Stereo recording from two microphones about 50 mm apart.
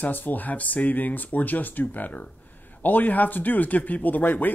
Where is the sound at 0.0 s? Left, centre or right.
Left.